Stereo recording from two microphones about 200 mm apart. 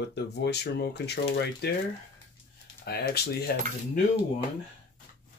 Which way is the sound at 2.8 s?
50° left (ahead or behind).